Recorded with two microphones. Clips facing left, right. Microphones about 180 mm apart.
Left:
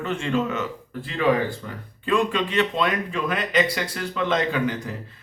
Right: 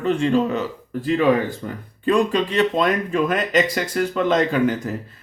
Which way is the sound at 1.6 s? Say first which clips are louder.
Right 6 dB; 40° right (ahead or behind).